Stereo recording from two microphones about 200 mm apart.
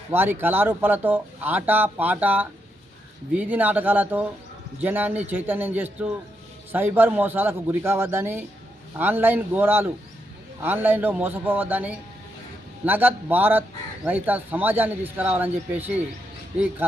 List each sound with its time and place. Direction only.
0.1 s speech: 10° right (ahead or behind)